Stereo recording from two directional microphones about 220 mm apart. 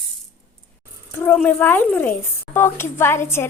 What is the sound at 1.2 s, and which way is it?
A woman's voice, 10° left (ahead or behind).